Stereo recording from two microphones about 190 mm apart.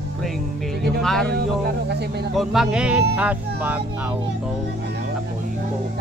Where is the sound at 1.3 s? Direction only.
55° right (ahead or behind).